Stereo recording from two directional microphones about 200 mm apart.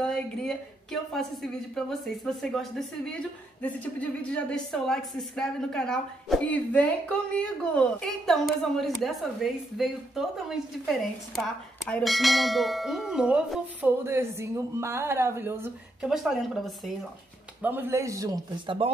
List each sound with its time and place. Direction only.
0.0 s a woman's voice: 5° left (ahead or behind); by 18.9 s 20° right (ahead or behind)